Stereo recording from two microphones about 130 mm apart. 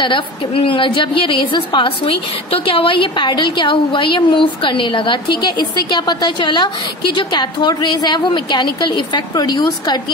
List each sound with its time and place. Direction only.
0.0 s a woman's voice: 40° left (ahead or behind)